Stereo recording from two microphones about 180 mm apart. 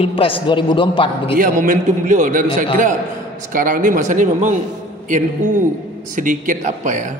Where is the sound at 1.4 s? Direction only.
45° right (ahead or behind).